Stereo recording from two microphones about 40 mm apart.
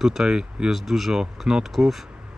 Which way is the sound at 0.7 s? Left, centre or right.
Centre.